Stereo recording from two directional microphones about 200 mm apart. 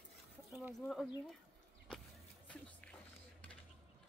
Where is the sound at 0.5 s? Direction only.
Centre (ahead or behind).